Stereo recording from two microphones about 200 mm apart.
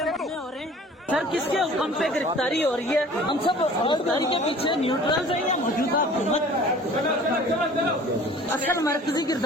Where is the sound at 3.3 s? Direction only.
25° left (ahead or behind).